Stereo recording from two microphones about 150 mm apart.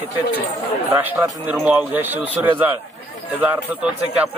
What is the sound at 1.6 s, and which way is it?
A man's voice, 10° right (ahead or behind).